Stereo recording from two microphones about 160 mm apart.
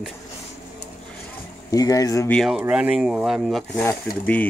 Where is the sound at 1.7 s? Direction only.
20° left (ahead or behind).